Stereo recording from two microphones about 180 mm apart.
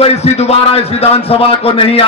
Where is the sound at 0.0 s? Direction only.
35° left (ahead or behind).